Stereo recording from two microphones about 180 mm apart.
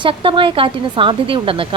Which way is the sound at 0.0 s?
30° right (ahead or behind).